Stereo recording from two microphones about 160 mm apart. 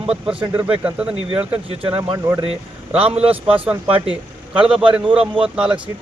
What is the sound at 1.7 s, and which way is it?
Speech, 35° right (ahead or behind).